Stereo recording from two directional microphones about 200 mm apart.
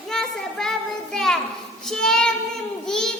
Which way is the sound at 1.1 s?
Centre (ahead or behind).